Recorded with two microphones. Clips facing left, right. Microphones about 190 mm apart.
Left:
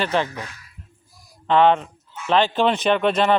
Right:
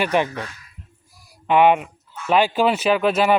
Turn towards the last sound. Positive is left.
turn(degrees=-5)  # may be behind; listen again after turning